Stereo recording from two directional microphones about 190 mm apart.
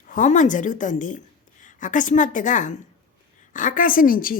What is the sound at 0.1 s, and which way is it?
A woman's voice, 40° left (ahead or behind).